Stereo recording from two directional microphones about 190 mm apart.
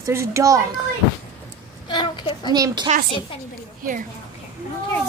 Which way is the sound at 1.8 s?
25° left (ahead or behind).